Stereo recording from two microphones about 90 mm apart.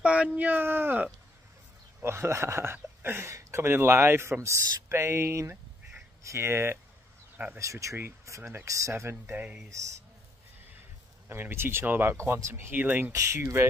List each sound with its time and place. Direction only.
0.0 s speech: 15° right (ahead or behind)
11.2 s speech: 25° right (ahead or behind)
13.1 s speech: 35° right (ahead or behind)